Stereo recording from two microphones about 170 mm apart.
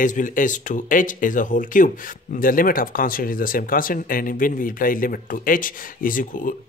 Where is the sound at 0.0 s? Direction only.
50° left (ahead or behind).